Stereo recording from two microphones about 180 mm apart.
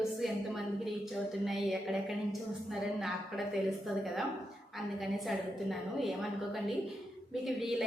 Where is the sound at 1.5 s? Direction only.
Centre (ahead or behind).